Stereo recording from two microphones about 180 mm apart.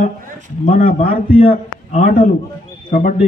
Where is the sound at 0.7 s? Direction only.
50° left (ahead or behind).